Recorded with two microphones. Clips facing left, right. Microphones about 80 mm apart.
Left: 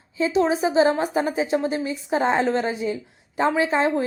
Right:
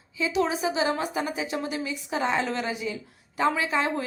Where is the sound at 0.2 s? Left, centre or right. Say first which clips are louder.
Left 5 dB; left.